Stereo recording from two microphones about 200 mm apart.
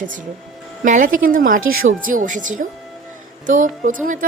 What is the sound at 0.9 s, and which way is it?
A woman's voice, 40° right (ahead or behind).